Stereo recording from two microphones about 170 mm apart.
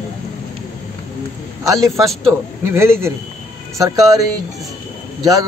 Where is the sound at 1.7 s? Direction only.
20° right (ahead or behind).